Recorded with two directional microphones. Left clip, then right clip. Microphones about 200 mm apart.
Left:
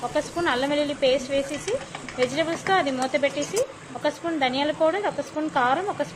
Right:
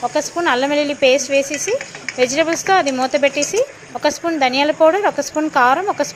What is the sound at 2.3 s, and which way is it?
Speech, 25° right (ahead or behind).